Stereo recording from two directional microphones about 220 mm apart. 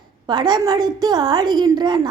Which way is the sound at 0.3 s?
20° right (ahead or behind).